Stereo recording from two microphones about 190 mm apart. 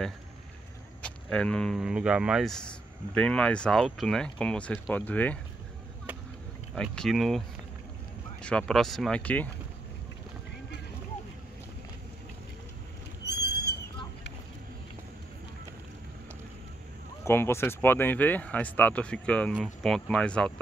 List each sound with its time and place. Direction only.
1.0 s speech: 5° left (ahead or behind)
6.7 s speech: centre (ahead or behind)
13.2 s neigh: 60° left (ahead or behind)
17.2 s speech: 15° left (ahead or behind)